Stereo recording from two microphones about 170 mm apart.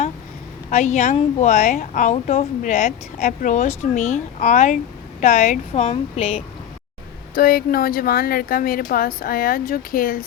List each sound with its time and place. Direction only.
0.7 s a woman's voice: 45° left (ahead or behind)
7.3 s speech: 60° left (ahead or behind)